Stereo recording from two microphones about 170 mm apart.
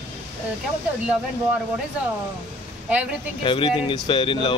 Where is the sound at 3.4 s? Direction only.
30° left (ahead or behind).